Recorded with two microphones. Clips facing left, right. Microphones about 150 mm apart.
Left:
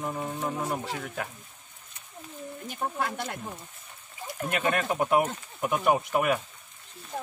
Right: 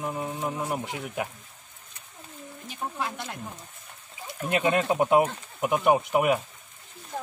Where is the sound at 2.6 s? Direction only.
55° left (ahead or behind).